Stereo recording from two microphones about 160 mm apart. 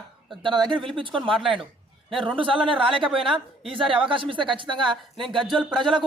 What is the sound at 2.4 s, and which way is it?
A man's voice, 30° right (ahead or behind).